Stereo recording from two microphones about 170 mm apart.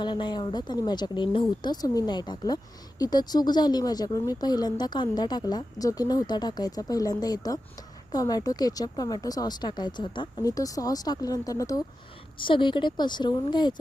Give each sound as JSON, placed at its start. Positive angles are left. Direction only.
{"t": 0.0, "sound": "speech", "side_deg": 25}